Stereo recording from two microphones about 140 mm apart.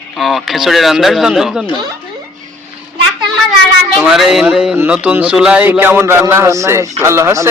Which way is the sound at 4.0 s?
Centre (ahead or behind).